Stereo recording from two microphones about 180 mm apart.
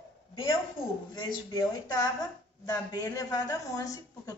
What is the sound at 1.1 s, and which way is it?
Speech, 25° left (ahead or behind).